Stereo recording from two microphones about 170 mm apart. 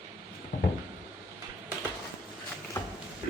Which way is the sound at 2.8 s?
20° left (ahead or behind).